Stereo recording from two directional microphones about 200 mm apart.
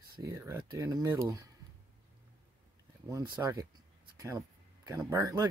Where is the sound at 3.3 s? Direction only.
20° right (ahead or behind).